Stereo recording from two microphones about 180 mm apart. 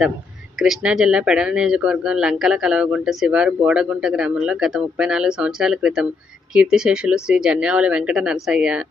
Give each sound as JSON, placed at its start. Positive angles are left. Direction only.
{"t": 0.6, "sound": "speech", "side_deg": -5}